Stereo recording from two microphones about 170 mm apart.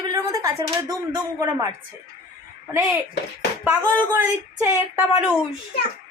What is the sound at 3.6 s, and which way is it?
Speech, 10° right (ahead or behind).